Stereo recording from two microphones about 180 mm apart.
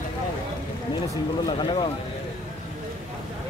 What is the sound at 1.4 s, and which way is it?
Speech, 30° left (ahead or behind).